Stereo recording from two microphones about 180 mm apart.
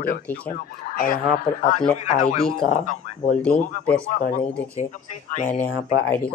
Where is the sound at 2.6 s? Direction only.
45° left (ahead or behind).